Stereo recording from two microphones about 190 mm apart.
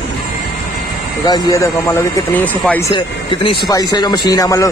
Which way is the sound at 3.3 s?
25° left (ahead or behind).